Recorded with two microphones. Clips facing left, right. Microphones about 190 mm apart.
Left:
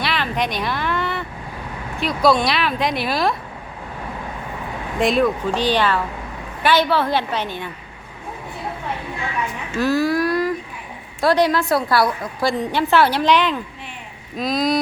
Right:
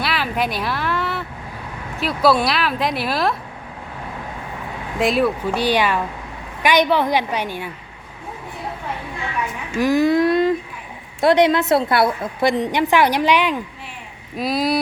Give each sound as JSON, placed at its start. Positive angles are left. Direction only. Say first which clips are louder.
{"t": 0.0, "sound": "speech", "louder": "even", "side_deg": -5}
{"t": 4.9, "sound": "a woman's voice", "louder": "left 1 dB", "side_deg": -5}
{"t": 9.7, "sound": "a sound", "louder": "right 3 dB", "side_deg": -15}
{"t": 11.2, "sound": "a woman's voice", "louder": "right 2 dB", "side_deg": -20}